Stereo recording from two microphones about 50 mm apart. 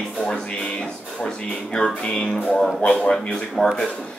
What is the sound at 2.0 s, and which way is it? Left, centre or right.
Speech, centre.